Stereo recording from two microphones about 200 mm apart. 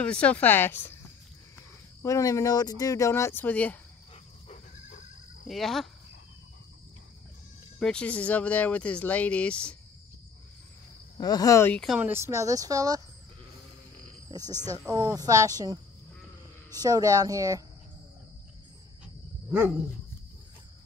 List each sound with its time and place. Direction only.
0.0 s speech: 5° left (ahead or behind)
2.0 s speech: 15° left (ahead or behind)
4.5 s goat: 40° left (ahead or behind)
5.5 s speech: centre (ahead or behind)
7.8 s speech: 5° left (ahead or behind)
11.1 s speech: 20° left (ahead or behind)
11.8 s speech: 5° right (ahead or behind)
14.9 s speech: 20° right (ahead or behind)